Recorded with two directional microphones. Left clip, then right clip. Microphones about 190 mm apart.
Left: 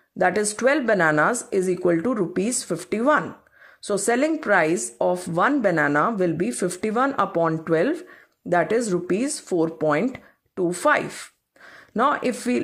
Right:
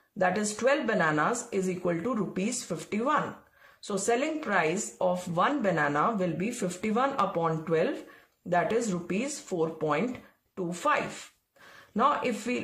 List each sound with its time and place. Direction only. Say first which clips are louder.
0.2 s speech: left 6 dB; 40° left (ahead or behind)